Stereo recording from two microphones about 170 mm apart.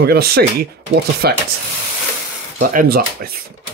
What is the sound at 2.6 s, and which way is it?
Speech, 55° right (ahead or behind).